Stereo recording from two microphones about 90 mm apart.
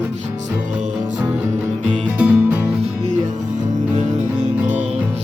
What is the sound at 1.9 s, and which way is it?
Music, 15° right (ahead or behind).